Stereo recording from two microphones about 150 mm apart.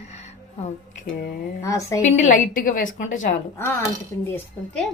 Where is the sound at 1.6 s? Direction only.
20° left (ahead or behind).